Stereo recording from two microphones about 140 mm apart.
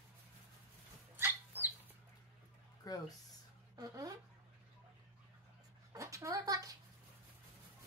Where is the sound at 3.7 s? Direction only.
25° right (ahead or behind).